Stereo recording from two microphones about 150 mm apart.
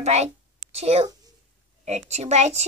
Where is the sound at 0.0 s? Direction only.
45° right (ahead or behind).